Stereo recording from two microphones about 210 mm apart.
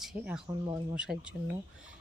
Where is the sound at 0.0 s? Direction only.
Centre (ahead or behind).